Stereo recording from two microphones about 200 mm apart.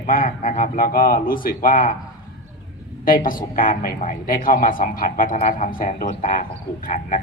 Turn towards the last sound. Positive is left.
turn(degrees=40)  # may be behind; listen again after turning